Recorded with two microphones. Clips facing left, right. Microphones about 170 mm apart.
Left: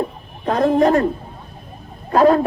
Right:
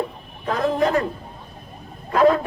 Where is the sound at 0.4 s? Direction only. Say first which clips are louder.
Left 6 dB; 45° left (ahead or behind).